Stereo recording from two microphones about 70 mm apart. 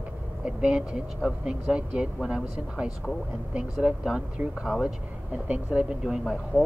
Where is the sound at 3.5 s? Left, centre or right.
Centre.